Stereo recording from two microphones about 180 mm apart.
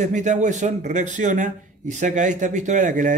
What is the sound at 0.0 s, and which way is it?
Speech, 40° right (ahead or behind).